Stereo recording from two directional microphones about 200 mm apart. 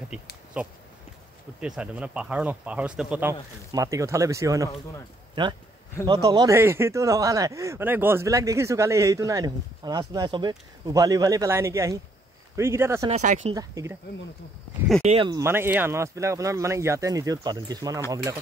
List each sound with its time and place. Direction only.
0.1 s speech: 5° right (ahead or behind)
13.1 s speech: 35° right (ahead or behind)
13.6 s speech: 15° right (ahead or behind)
15.0 s speech: 25° right (ahead or behind)
15.4 s speech: 10° right (ahead or behind)